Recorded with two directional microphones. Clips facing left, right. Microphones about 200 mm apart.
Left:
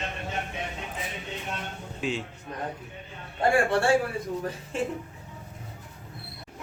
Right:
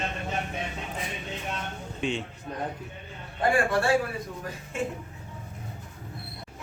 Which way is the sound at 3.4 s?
30° left (ahead or behind).